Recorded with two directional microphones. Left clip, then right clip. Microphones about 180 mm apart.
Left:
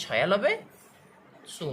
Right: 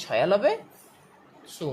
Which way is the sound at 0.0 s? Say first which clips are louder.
Right 2 dB; 30° right (ahead or behind).